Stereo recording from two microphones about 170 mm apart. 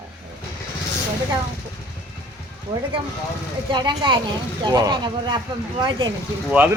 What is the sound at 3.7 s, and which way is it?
Speech, 25° right (ahead or behind).